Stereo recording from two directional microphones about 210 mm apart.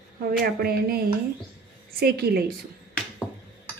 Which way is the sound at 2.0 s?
45° right (ahead or behind).